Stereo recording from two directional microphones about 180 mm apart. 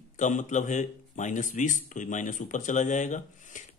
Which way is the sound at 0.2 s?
45° left (ahead or behind).